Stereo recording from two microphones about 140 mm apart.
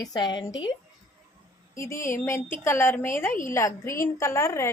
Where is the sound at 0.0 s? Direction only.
30° left (ahead or behind).